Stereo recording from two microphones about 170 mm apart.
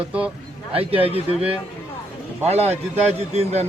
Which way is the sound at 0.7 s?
35° right (ahead or behind).